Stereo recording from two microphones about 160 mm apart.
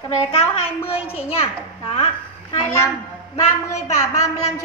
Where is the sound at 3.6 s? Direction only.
20° left (ahead or behind).